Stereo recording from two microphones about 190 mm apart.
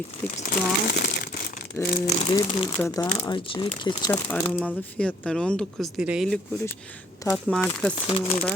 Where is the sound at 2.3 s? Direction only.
20° left (ahead or behind).